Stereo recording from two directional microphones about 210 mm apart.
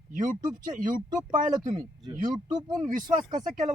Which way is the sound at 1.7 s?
20° right (ahead or behind).